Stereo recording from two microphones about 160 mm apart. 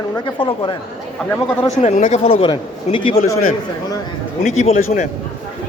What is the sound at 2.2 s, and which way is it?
Speech, 30° left (ahead or behind).